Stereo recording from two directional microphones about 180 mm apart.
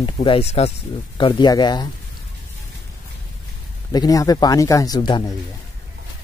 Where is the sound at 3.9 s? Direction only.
20° left (ahead or behind).